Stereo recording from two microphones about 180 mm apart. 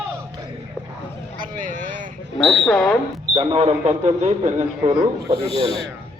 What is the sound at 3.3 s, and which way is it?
Speech, 35° right (ahead or behind).